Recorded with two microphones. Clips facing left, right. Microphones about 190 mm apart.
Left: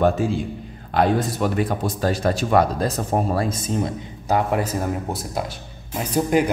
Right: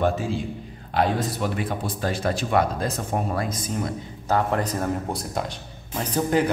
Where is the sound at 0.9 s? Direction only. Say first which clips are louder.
Left 4 dB; 45° left (ahead or behind); by 3.9 s 25° left (ahead or behind).